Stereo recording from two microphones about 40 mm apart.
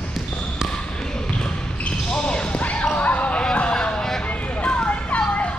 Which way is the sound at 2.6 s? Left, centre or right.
Left.